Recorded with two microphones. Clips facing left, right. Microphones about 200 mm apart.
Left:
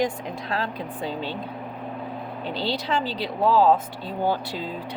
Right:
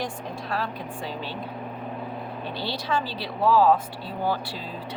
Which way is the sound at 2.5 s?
20° left (ahead or behind).